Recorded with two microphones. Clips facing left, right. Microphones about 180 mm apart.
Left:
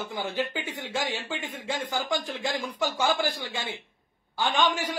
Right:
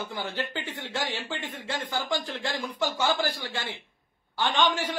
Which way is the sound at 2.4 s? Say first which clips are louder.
Left 1 dB; 15° left (ahead or behind).